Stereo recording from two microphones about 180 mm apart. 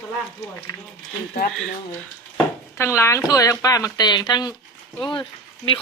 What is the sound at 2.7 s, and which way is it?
Speech, 15° left (ahead or behind).